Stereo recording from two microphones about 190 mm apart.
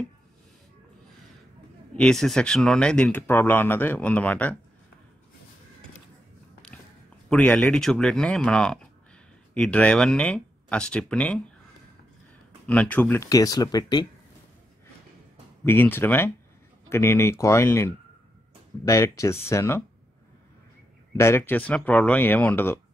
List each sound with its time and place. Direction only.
2.0 s speech: centre (ahead or behind)
7.2 s speech: 5° left (ahead or behind)
12.6 s speech: 5° left (ahead or behind)
15.6 s speech: 10° left (ahead or behind)
21.2 s speech: 10° left (ahead or behind)